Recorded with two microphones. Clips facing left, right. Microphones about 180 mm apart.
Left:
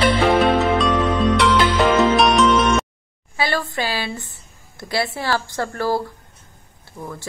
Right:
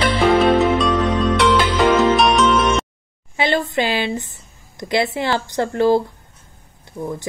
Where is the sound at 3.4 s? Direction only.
20° right (ahead or behind).